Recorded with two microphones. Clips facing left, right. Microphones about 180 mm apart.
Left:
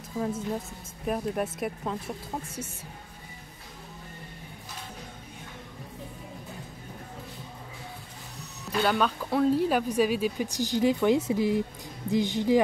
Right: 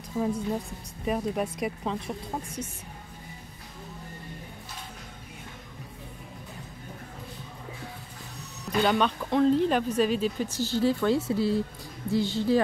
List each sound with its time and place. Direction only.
0.2 s a woman's voice: centre (ahead or behind)
8.8 s speech: 5° left (ahead or behind)